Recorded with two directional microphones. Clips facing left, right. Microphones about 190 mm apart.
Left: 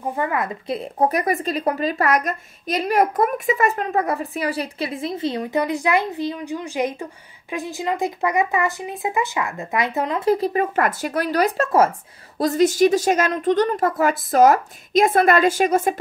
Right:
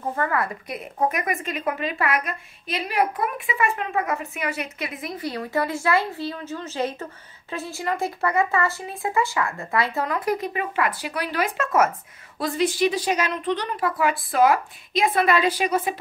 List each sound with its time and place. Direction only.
0.1 s a woman's voice: 15° left (ahead or behind); by 16.0 s 45° left (ahead or behind)